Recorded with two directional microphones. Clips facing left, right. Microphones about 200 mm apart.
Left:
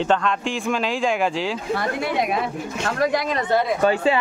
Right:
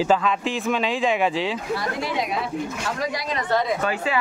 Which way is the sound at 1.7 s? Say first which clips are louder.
Left 3 dB; 55° left (ahead or behind).